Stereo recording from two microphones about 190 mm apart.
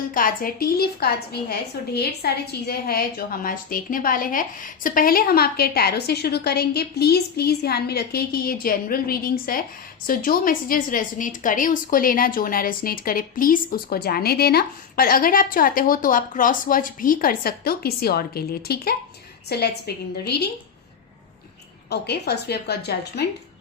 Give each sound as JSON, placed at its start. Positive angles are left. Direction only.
{"t": 0.1, "sound": "a woman's voice", "side_deg": 45}
{"t": 21.8, "sound": "a woman's voice", "side_deg": 60}